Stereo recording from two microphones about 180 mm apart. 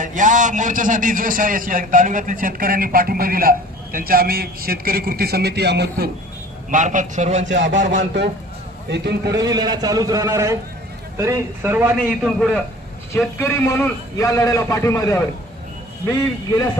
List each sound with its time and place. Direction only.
0.0 s a man's voice: 45° right (ahead or behind); by 6.0 s 65° right (ahead or behind)
6.7 s a man's voice: 45° right (ahead or behind)
7.4 s speech: 90° right
7.9 s a man's voice: 75° right (ahead or behind)
9.3 s a man's voice: 20° right (ahead or behind)
12.4 s a man's voice: centre (ahead or behind)
13.4 s a man's voice: 15° left (ahead or behind)